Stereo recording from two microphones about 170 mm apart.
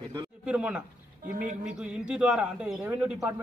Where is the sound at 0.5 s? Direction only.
5° right (ahead or behind).